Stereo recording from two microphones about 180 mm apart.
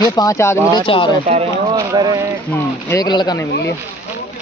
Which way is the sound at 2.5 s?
15° left (ahead or behind).